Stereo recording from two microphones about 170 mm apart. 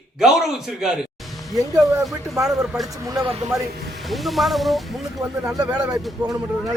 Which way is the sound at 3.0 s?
20° right (ahead or behind).